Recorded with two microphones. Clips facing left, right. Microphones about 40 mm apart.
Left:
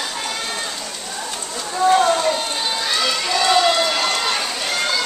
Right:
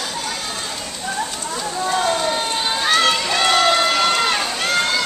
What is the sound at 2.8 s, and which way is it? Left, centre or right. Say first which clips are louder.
Run: right 6 dB; right.